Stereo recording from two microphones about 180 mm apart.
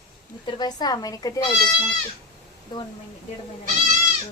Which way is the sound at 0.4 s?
25° left (ahead or behind).